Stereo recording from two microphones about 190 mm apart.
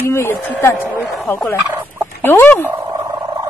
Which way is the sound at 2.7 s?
10° right (ahead or behind).